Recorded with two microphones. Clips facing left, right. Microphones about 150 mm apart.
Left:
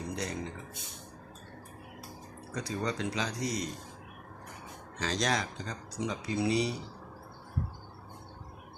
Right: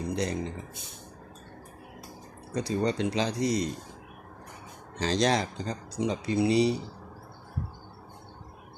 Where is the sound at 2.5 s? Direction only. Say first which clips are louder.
Right 6 dB; 30° right (ahead or behind).